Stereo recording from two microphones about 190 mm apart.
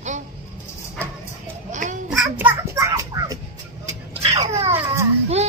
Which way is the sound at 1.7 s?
40° right (ahead or behind).